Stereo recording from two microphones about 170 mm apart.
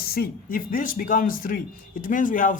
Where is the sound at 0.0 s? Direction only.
60° left (ahead or behind).